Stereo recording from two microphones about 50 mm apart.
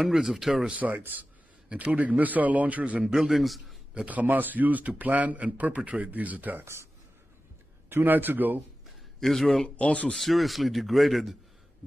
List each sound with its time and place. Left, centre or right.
0.0 s speech: centre
0.7 s speech: right
3.0 s speech: centre
3.3 s speech: centre
3.9 s speech: right
6.6 s speech: right
7.9 s speech: right
9.2 s speech: centre
9.8 s speech: left
10.1 s speech: centre